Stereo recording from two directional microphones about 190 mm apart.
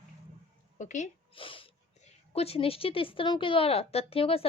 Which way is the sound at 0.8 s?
40° left (ahead or behind).